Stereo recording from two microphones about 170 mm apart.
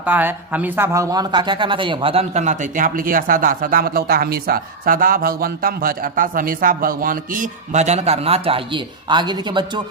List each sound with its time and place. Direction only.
0.0 s speech: 10° right (ahead or behind); by 9.8 s 25° right (ahead or behind)